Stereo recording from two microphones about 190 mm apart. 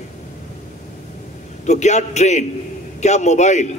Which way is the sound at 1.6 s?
35° left (ahead or behind).